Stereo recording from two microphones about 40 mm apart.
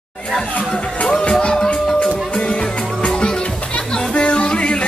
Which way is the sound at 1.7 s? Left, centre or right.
Left.